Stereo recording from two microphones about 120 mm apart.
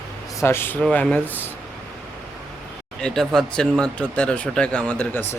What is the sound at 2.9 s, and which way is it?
Speech, 5° left (ahead or behind).